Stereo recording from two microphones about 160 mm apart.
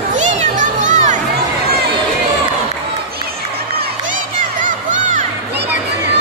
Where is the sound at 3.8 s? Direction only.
55° right (ahead or behind).